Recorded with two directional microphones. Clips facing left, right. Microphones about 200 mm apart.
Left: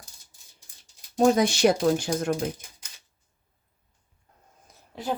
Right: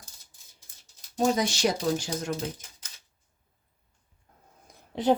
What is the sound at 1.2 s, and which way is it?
Speech, 55° left (ahead or behind).